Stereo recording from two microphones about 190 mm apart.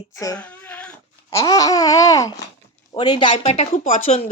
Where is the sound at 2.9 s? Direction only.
20° left (ahead or behind).